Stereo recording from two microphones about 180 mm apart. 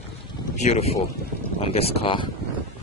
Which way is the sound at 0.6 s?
35° left (ahead or behind).